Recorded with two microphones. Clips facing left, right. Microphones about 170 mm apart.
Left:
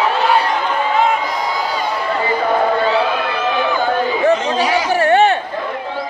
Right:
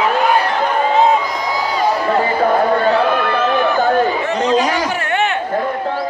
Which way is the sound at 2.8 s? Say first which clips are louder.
Right 2 dB; 50° right (ahead or behind).